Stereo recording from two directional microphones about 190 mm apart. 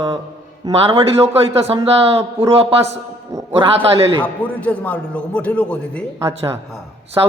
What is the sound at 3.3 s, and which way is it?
Speech, 15° right (ahead or behind).